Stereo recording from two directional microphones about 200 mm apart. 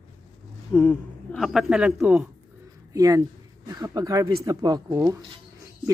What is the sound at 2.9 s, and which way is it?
A man's voice, 15° right (ahead or behind).